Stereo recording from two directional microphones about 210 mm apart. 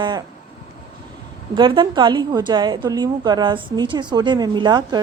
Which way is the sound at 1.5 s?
20° right (ahead or behind).